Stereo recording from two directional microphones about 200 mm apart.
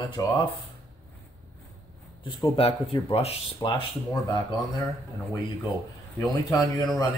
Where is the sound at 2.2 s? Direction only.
25° left (ahead or behind).